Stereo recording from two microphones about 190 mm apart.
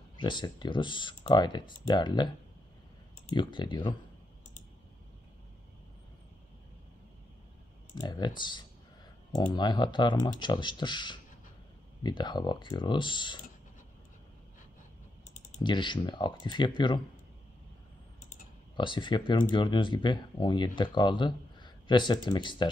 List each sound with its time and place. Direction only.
0.2 s speech: 25° left (ahead or behind)
3.3 s speech: 25° left (ahead or behind)
7.9 s speech: 20° left (ahead or behind)
15.6 s speech: 25° left (ahead or behind)
18.8 s speech: 25° left (ahead or behind)